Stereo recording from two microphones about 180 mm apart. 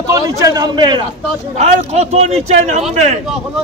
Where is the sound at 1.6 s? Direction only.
40° right (ahead or behind).